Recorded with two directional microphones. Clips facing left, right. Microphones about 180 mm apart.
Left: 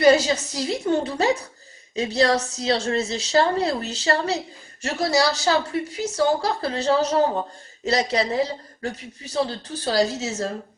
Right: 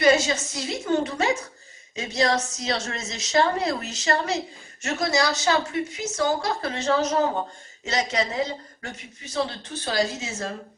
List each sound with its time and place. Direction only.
0.0 s a man's voice: 35° left (ahead or behind)